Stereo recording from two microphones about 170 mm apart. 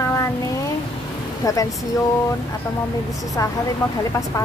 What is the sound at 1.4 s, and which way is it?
Speech, 20° left (ahead or behind).